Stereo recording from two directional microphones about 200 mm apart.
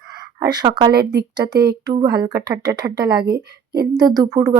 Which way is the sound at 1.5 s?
50° right (ahead or behind).